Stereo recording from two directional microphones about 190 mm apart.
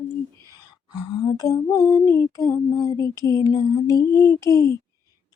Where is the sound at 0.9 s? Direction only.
20° left (ahead or behind).